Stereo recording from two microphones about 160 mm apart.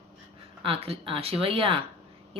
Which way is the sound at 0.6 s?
35° right (ahead or behind).